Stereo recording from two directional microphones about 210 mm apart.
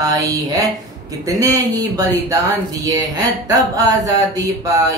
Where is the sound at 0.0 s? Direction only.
15° right (ahead or behind).